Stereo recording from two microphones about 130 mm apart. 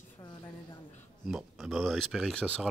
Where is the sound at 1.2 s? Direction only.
5° right (ahead or behind).